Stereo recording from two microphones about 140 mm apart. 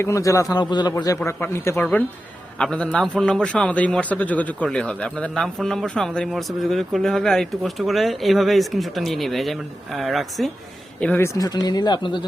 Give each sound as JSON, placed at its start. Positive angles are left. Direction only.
{"t": 0.0, "sound": "a man's voice", "side_deg": 20}
{"t": 11.3, "sound": "speech", "side_deg": 25}